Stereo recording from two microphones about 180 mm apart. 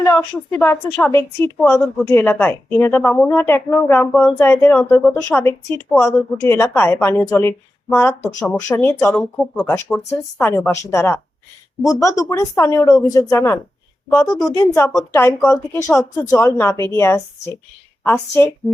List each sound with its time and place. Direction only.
0.0 s a woman's voice: 15° left (ahead or behind)
14.3 s a woman's voice: centre (ahead or behind)
14.5 s a woman's voice: 15° left (ahead or behind)